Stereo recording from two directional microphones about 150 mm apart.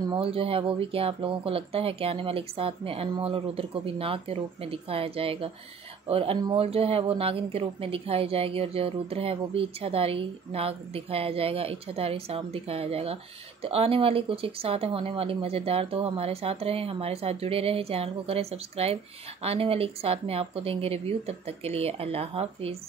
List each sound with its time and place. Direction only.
0.1 s a woman's voice: 35° right (ahead or behind)